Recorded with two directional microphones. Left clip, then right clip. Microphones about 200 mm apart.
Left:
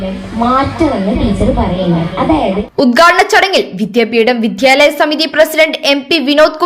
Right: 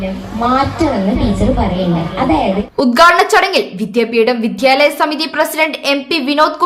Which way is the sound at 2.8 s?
15° left (ahead or behind).